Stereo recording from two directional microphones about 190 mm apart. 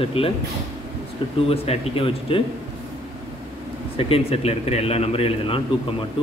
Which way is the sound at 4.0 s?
30° left (ahead or behind).